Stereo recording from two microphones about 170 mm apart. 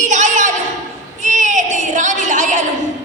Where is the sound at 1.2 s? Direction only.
45° right (ahead or behind).